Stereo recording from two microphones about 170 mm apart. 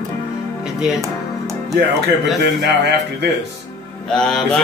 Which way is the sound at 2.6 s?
85° right.